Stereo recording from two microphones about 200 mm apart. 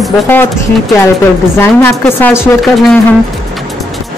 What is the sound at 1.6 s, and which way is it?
Speech, 10° left (ahead or behind).